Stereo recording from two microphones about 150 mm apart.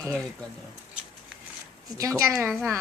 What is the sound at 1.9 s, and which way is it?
Speech, 20° right (ahead or behind).